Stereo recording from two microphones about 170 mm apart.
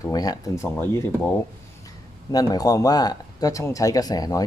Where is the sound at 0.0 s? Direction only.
20° left (ahead or behind).